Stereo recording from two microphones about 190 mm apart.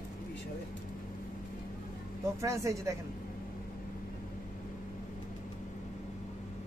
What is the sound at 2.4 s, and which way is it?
Speech, 15° right (ahead or behind).